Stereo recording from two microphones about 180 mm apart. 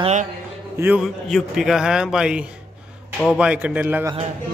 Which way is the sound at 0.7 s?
10° right (ahead or behind).